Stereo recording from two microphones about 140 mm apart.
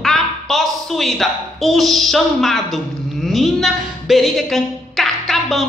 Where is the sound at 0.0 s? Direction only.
Centre (ahead or behind).